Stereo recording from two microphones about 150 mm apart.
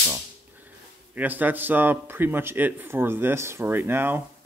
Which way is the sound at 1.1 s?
10° right (ahead or behind).